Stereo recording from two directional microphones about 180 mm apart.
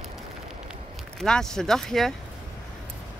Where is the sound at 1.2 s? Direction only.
5° left (ahead or behind).